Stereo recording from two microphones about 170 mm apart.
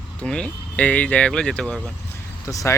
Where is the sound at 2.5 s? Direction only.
20° left (ahead or behind).